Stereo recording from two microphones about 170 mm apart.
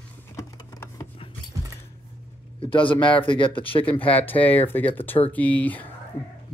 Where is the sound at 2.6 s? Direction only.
30° left (ahead or behind).